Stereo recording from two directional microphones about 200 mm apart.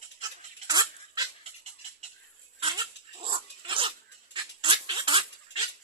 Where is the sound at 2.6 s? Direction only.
25° right (ahead or behind).